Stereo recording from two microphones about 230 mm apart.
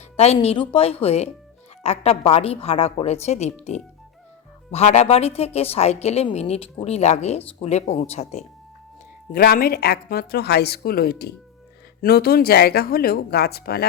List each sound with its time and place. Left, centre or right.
0.2 s a woman's voice: left
9.3 s a woman's voice: left